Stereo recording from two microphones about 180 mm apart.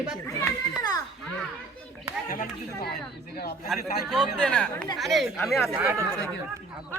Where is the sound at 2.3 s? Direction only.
50° left (ahead or behind).